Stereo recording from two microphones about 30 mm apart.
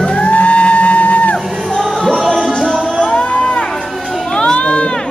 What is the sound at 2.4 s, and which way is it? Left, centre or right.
Music, centre.